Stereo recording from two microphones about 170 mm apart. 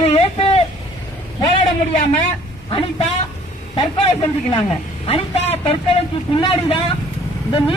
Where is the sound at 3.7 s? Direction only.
30° left (ahead or behind).